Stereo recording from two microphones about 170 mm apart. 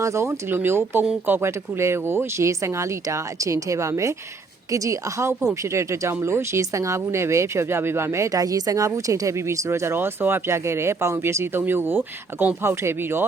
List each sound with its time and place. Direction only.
0.0 s a woman's voice: 15° right (ahead or behind)